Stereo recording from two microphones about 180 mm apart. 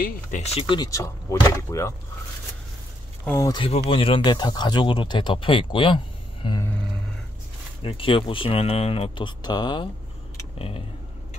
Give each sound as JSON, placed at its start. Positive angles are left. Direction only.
{"t": 0.0, "sound": "speech", "side_deg": 40}
{"t": 3.3, "sound": "speech", "side_deg": 20}
{"t": 3.6, "sound": "speech", "side_deg": 30}
{"t": 7.8, "sound": "speech", "side_deg": 30}